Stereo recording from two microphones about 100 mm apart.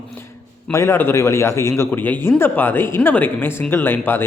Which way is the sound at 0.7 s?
25° left (ahead or behind).